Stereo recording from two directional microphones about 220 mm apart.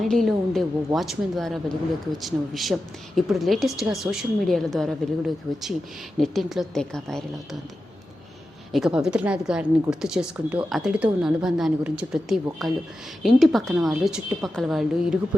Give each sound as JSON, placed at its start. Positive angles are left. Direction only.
{"t": 0.0, "sound": "a woman's voice", "side_deg": 0}
{"t": 8.7, "sound": "a woman's voice", "side_deg": 0}